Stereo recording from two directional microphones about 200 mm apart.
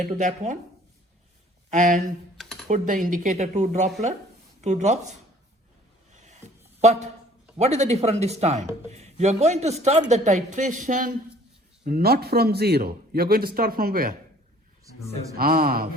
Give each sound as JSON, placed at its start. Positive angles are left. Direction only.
{"t": 0.0, "sound": "speech", "side_deg": -40}
{"t": 1.7, "sound": "speech", "side_deg": -40}
{"t": 2.4, "sound": "computer keyboard", "side_deg": 0}
{"t": 2.6, "sound": "speech", "side_deg": -40}
{"t": 6.1, "sound": "a sound", "side_deg": -35}
{"t": 7.5, "sound": "a man's voice", "side_deg": -35}
{"t": 15.4, "sound": "a man's voice", "side_deg": -50}